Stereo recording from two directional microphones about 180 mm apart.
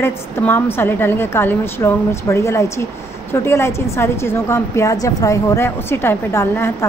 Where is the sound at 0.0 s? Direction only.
10° left (ahead or behind).